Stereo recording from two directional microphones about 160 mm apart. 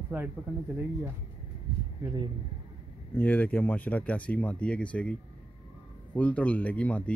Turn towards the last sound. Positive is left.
turn(degrees=10)  # may be behind; listen again after turning